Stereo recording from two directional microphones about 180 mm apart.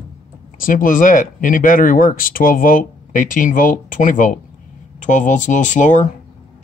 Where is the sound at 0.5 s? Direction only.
50° left (ahead or behind).